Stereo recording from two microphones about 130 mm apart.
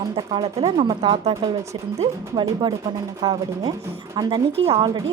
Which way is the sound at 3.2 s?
35° right (ahead or behind).